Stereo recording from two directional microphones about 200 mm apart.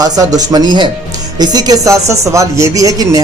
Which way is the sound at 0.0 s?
20° right (ahead or behind).